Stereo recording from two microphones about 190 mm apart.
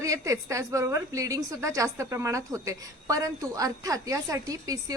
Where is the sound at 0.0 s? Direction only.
15° right (ahead or behind).